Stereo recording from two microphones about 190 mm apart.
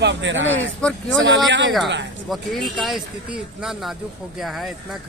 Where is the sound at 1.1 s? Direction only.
70° right (ahead or behind).